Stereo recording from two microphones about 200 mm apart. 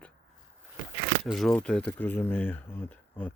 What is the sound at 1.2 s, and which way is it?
Speech, centre (ahead or behind).